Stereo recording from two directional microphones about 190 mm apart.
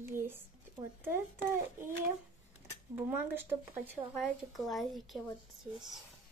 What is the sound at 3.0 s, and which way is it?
Speech, 10° right (ahead or behind).